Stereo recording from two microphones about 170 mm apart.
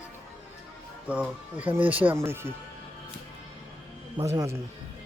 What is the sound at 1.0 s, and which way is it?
Speech, 10° right (ahead or behind).